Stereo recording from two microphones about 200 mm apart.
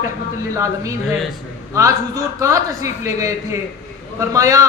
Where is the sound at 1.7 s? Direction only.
15° right (ahead or behind).